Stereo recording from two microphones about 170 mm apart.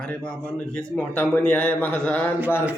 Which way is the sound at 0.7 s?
10° left (ahead or behind).